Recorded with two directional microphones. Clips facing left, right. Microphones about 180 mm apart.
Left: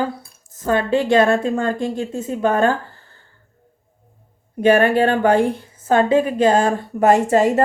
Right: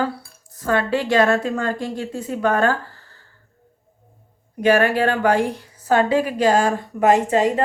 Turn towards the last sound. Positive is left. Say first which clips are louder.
# left 2 dB
turn(degrees=45)  # may be behind; listen again after turning